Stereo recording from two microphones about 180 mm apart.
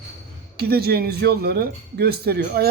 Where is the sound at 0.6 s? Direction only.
60° right (ahead or behind).